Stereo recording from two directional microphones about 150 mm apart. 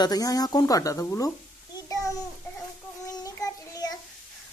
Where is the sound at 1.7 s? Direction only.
20° left (ahead or behind).